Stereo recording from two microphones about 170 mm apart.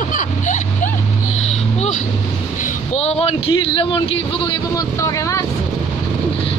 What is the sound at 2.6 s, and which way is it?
Speech, 35° left (ahead or behind).